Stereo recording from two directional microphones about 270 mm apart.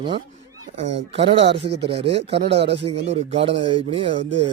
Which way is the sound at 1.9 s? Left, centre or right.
Right.